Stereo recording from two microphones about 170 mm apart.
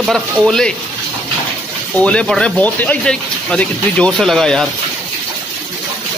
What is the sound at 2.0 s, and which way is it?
Speech, 5° left (ahead or behind).